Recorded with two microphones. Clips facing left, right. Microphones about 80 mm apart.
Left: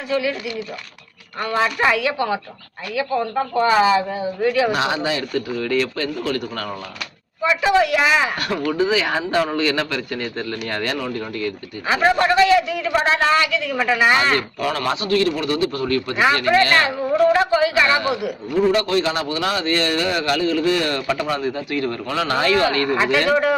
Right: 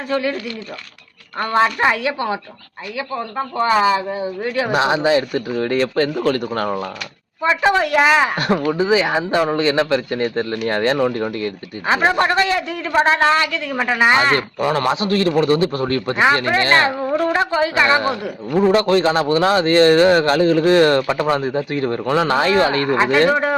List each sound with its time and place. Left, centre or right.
0.1 s speech: right
1.5 s a man's voice: right
3.6 s speech: right
5.3 s a man's voice: right
8.6 s a man's voice: centre